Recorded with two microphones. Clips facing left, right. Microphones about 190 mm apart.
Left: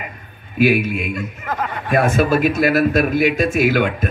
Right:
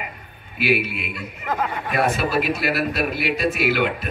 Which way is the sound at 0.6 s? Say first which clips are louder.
Left 6 dB; 45° left (ahead or behind).